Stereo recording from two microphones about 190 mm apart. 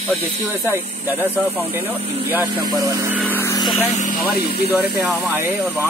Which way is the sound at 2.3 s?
15° right (ahead or behind).